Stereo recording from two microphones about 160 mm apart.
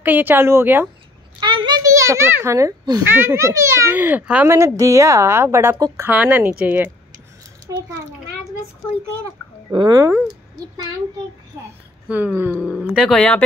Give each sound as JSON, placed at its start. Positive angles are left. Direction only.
{"t": 0.0, "sound": "a child's voice", "side_deg": -10}
{"t": 1.4, "sound": "a sound", "side_deg": -30}
{"t": 3.1, "sound": "a child's voice", "side_deg": -15}
{"t": 7.7, "sound": "speech", "side_deg": -20}
{"t": 9.7, "sound": "speech", "side_deg": -25}
{"t": 12.1, "sound": "a child's voice", "side_deg": -10}
{"t": 12.5, "sound": "speech", "side_deg": 0}